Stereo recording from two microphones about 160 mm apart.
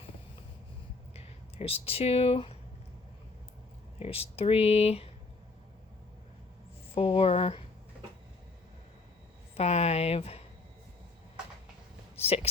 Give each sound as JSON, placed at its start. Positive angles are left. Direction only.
{"t": 1.1, "sound": "speech", "side_deg": 40}
{"t": 4.0, "sound": "speech", "side_deg": 35}
{"t": 6.9, "sound": "speech", "side_deg": 35}
{"t": 9.6, "sound": "speech", "side_deg": 40}
{"t": 12.1, "sound": "a sound", "side_deg": 40}